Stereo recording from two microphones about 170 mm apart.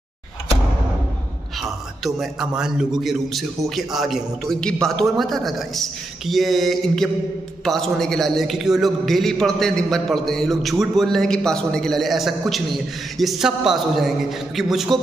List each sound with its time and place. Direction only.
2.0 s a man's voice: centre (ahead or behind)